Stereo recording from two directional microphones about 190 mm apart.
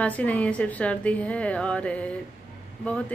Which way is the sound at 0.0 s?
5° left (ahead or behind).